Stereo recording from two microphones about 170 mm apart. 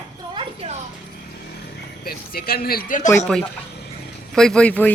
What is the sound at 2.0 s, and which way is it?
Speech, 60° left (ahead or behind).